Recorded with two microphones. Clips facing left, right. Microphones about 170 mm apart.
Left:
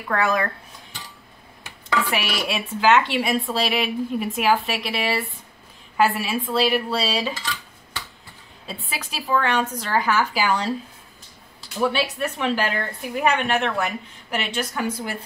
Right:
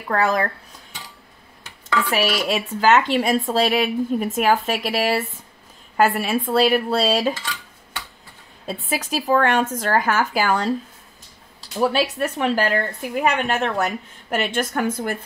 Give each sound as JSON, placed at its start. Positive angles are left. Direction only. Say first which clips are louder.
{"t": 0.1, "sound": "speech", "louder": "right 2 dB", "side_deg": -35}
{"t": 2.0, "sound": "a woman's voice", "louder": "right 5 dB", "side_deg": -40}
{"t": 8.8, "sound": "a woman's voice", "louder": "right 8 dB", "side_deg": -45}
{"t": 11.6, "sound": "a woman's voice", "louder": "right 3 dB", "side_deg": -35}